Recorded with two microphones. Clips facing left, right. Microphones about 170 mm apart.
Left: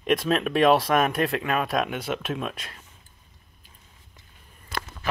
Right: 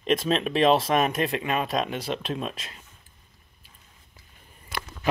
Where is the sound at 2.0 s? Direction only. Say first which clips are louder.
Left 1 dB; 30° right (ahead or behind).